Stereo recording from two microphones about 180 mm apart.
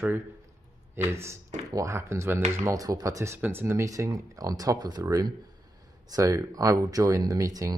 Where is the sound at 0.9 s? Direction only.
15° right (ahead or behind).